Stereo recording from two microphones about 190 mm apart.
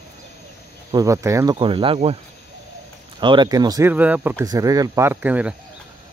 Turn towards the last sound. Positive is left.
turn(degrees=-10)  # may be behind; listen again after turning